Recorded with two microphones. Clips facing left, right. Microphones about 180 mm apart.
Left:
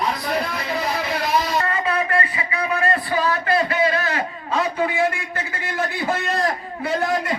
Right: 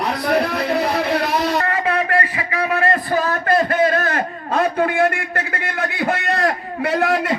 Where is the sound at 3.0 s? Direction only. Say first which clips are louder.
Right 2 dB; 45° right (ahead or behind).